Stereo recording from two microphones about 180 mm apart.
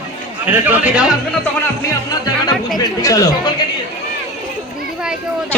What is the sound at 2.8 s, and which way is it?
Speech, 20° left (ahead or behind).